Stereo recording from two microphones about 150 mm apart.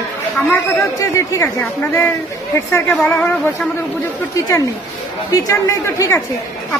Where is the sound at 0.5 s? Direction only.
20° left (ahead or behind).